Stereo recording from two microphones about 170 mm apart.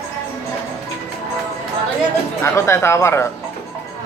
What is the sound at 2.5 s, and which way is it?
Speech, 15° left (ahead or behind).